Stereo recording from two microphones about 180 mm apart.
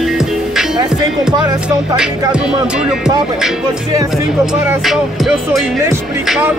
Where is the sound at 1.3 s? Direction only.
20° right (ahead or behind).